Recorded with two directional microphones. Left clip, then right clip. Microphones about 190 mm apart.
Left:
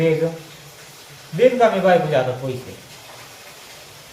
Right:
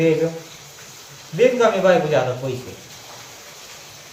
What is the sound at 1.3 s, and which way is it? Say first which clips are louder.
Speech: left 1 dB; 10° right (ahead or behind).